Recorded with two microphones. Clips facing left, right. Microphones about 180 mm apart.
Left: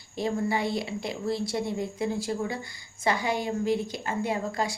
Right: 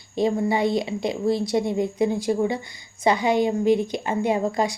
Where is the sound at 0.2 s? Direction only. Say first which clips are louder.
Right 6 dB; 20° right (ahead or behind).